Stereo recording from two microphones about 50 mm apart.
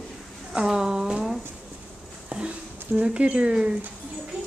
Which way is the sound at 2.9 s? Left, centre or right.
Right.